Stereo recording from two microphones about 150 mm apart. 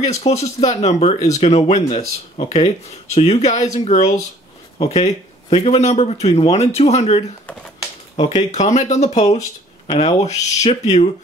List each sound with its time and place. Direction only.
0.0 s speech: 45° left (ahead or behind)
8.4 s speech: 50° left (ahead or behind)